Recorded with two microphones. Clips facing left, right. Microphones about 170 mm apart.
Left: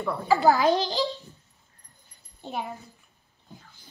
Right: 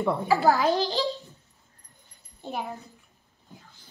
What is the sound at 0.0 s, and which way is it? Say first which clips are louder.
Speech: right 4 dB; 20° right (ahead or behind).